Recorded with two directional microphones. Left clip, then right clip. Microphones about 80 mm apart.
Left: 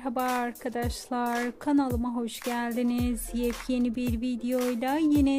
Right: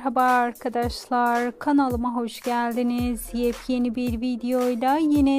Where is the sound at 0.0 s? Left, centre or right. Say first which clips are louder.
Right 9 dB; right.